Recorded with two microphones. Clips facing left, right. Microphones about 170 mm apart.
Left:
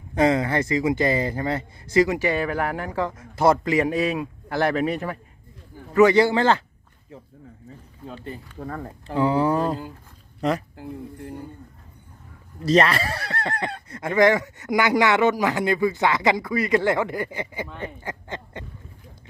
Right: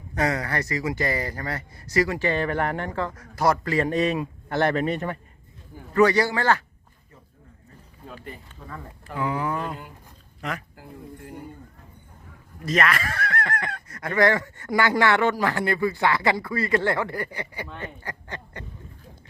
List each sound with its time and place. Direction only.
0.1 s speech: 20° left (ahead or behind); by 3.0 s 5° left (ahead or behind)
3.0 s speech: 20° left (ahead or behind)
3.9 s speech: centre (ahead or behind)
5.9 s speech: 20° left (ahead or behind)
8.5 s speech: 50° left (ahead or behind)
9.0 s speech: 30° left (ahead or behind)
12.6 s speech: 30° left (ahead or behind)
14.1 s speech: 15° left (ahead or behind)
18.0 s speech: 20° left (ahead or behind)